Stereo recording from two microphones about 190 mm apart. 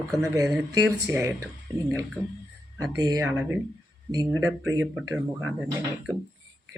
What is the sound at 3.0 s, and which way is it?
Speech, 20° right (ahead or behind).